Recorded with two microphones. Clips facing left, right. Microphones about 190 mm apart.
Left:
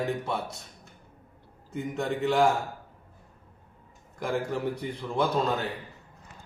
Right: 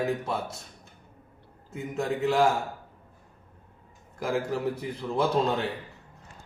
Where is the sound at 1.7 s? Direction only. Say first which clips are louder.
Even; 5° right (ahead or behind).